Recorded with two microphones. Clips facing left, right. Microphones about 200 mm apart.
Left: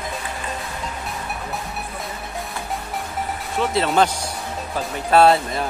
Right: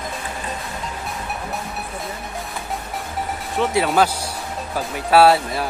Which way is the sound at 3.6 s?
15° right (ahead or behind).